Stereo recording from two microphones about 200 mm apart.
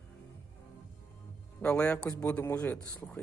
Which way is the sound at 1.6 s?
5° left (ahead or behind).